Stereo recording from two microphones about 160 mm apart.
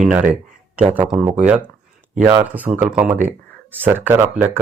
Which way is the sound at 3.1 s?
50° right (ahead or behind).